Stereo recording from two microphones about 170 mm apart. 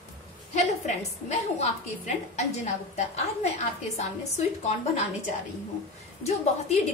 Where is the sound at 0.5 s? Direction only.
40° left (ahead or behind).